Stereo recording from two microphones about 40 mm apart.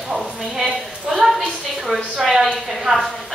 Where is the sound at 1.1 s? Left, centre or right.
Centre.